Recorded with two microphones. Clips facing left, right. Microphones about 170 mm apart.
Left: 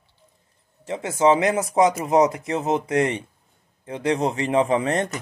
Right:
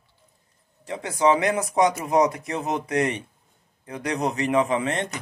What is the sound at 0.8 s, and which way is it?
Speech, 25° left (ahead or behind).